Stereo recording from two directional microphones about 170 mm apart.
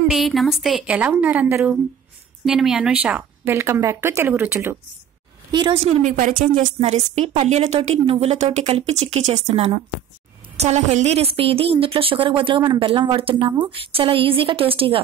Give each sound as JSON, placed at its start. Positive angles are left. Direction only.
{"t": 0.1, "sound": "a woman's voice", "side_deg": 0}
{"t": 2.4, "sound": "a woman's voice", "side_deg": 0}
{"t": 5.5, "sound": "a woman's voice", "side_deg": -30}
{"t": 6.1, "sound": "a woman's voice", "side_deg": -50}